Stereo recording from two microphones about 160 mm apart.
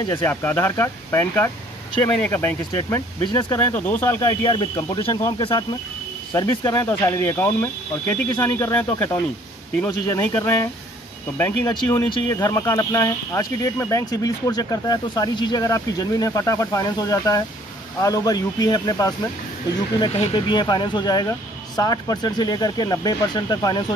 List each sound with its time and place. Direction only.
0.1 s speech: 15° left (ahead or behind)
3.3 s speech: 30° left (ahead or behind)
3.5 s speech: 10° left (ahead or behind)
4.2 s speech: 25° left (ahead or behind)
20.3 s speech: 25° left (ahead or behind)